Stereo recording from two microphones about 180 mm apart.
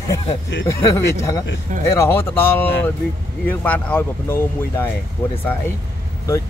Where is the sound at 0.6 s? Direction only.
20° left (ahead or behind).